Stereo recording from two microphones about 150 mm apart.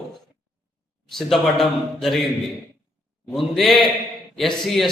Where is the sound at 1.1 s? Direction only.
Centre (ahead or behind).